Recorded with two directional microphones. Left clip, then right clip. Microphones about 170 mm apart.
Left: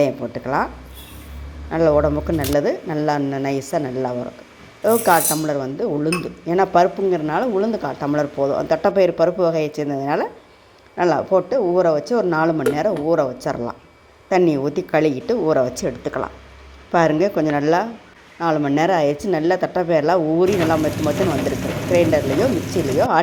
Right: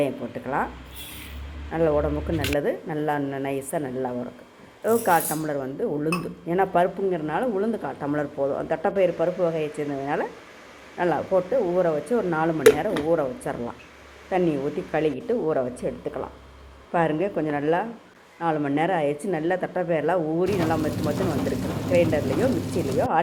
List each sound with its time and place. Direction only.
0.0 s speech: 35° left (ahead or behind)
1.7 s speech: 35° left (ahead or behind)